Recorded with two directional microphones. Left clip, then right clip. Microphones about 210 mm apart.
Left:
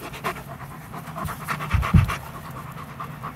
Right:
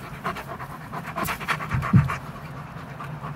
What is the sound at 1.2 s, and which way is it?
Pant, 20° right (ahead or behind).